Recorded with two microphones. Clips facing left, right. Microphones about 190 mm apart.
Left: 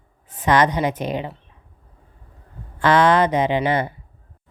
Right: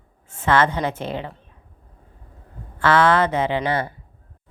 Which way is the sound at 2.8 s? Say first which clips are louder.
Left 1 dB; 15° left (ahead or behind).